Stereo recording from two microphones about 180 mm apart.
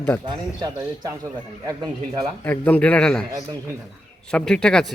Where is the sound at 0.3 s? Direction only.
20° right (ahead or behind).